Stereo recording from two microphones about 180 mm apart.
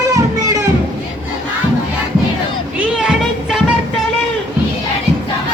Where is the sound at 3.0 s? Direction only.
5° right (ahead or behind).